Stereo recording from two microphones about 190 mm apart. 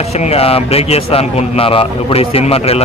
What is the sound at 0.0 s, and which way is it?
A man's voice, 35° left (ahead or behind).